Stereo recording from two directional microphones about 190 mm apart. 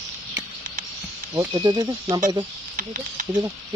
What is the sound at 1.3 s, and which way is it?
Speech, 20° right (ahead or behind).